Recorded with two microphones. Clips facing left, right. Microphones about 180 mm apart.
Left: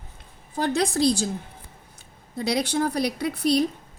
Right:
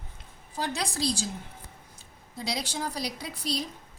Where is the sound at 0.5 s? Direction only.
55° left (ahead or behind).